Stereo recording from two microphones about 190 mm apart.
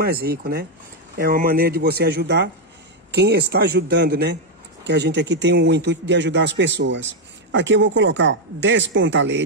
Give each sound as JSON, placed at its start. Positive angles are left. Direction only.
{"t": 0.0, "sound": "a man's voice", "side_deg": -55}